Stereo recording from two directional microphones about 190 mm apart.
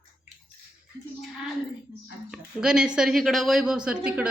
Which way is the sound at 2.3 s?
5° right (ahead or behind).